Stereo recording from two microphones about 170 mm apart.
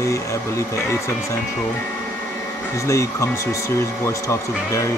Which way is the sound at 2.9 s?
15° left (ahead or behind).